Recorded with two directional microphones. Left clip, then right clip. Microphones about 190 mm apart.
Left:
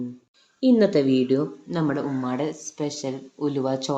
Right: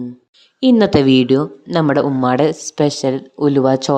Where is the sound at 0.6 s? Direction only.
50° right (ahead or behind).